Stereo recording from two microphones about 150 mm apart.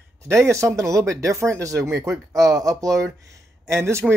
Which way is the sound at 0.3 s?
20° right (ahead or behind).